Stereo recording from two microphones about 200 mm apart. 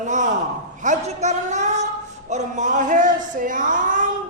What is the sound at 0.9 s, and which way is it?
A man's voice, 35° right (ahead or behind).